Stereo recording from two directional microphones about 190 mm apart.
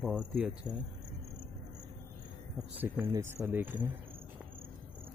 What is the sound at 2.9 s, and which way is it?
Speech, 15° right (ahead or behind).